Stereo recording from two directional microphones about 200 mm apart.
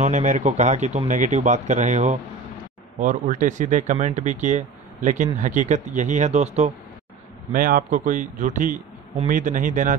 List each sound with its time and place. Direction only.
0.0 s speech: 40° right (ahead or behind)
7.5 s speech: 45° right (ahead or behind)